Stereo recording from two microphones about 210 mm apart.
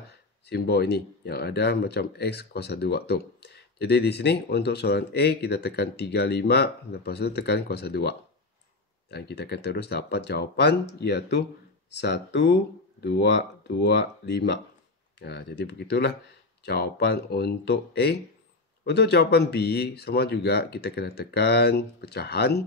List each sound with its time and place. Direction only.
0.5 s speech: 50° left (ahead or behind)